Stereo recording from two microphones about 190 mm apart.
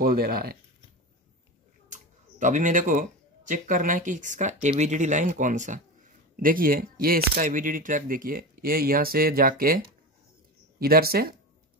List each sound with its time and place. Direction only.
0.0 s speech: 50° right (ahead or behind)
1.9 s speech: 40° right (ahead or behind)
10.8 s speech: 50° right (ahead or behind)